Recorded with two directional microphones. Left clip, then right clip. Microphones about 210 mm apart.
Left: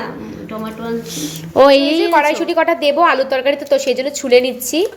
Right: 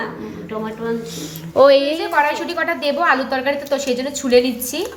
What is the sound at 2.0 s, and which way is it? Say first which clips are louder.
A woman's voice: left 4 dB; 25° left (ahead or behind).